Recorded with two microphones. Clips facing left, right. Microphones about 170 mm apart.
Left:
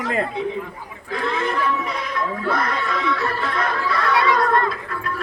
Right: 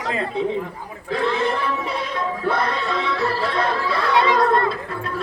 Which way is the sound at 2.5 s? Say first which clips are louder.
Right 2 dB; 25° right (ahead or behind).